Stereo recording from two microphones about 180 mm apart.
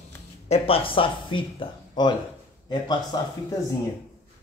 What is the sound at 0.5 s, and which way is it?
Speech, 30° left (ahead or behind).